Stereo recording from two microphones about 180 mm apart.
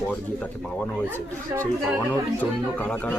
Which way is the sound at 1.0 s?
10° left (ahead or behind).